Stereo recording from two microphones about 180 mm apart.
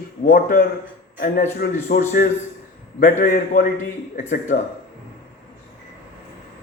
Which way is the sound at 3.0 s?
50° left (ahead or behind).